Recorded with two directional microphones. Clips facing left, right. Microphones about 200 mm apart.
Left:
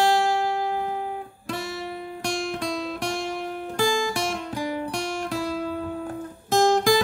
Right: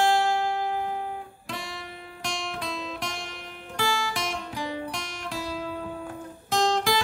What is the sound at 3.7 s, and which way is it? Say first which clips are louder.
Music: left 5 dB; 45° left (ahead or behind).